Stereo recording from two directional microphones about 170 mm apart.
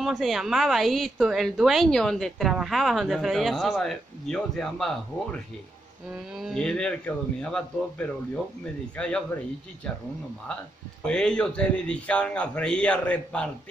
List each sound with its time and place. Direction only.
0.0 s a woman's voice: centre (ahead or behind)
8.9 s a woman's voice: 5° left (ahead or behind)
11.1 s a man's voice: 5° left (ahead or behind)